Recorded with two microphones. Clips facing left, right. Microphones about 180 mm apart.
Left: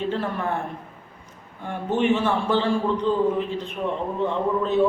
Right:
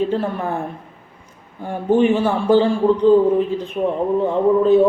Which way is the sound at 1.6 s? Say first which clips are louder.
Right 6 dB; 35° right (ahead or behind).